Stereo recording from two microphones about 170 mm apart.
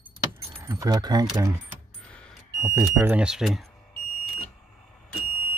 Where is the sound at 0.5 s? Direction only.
15° right (ahead or behind).